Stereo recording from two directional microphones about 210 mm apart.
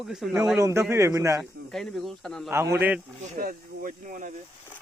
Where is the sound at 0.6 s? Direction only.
15° right (ahead or behind).